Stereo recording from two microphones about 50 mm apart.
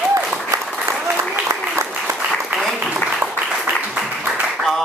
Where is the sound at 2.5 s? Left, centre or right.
Right.